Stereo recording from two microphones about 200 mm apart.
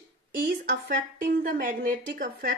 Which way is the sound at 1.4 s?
45° right (ahead or behind).